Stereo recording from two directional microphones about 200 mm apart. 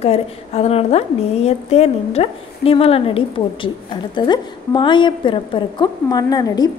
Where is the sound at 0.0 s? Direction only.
30° left (ahead or behind).